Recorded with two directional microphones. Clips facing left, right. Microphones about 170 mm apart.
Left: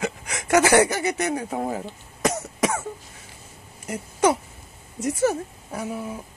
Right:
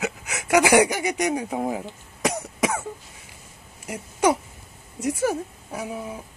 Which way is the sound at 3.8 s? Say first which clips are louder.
Even; 10° right (ahead or behind).